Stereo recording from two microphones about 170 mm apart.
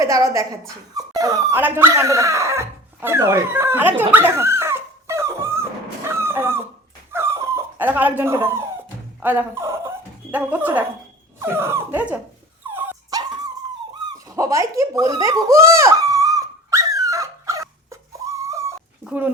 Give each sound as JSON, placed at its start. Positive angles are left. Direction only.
{"t": 0.0, "sound": "a woman's voice", "side_deg": -20}
{"t": 4.1, "sound": "dog", "side_deg": -15}
{"t": 6.1, "sound": "a sound", "side_deg": -15}
{"t": 7.1, "sound": "dog", "side_deg": -15}
{"t": 9.2, "sound": "speech", "side_deg": -10}
{"t": 12.7, "sound": "dog", "side_deg": -15}
{"t": 14.3, "sound": "a sound", "side_deg": -20}
{"t": 18.4, "sound": "dog", "side_deg": -15}
{"t": 19.0, "sound": "speech", "side_deg": -10}